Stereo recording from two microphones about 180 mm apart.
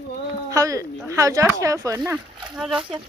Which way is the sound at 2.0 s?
Centre (ahead or behind).